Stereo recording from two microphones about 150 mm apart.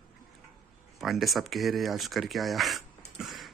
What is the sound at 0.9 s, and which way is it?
Speech, centre (ahead or behind).